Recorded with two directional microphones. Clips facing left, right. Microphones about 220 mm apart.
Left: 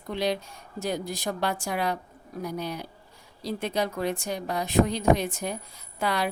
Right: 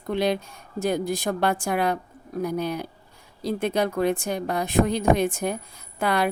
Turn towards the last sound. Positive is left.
turn(degrees=-55)  # may be behind; listen again after turning